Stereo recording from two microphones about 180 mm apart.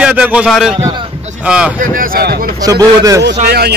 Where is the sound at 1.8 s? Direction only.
50° right (ahead or behind).